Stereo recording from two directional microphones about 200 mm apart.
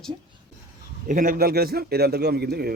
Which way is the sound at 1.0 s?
45° right (ahead or behind).